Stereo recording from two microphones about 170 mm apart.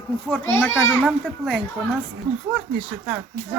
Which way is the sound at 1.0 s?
Centre (ahead or behind).